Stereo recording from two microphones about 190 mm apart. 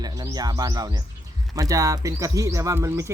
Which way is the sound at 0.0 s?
20° right (ahead or behind).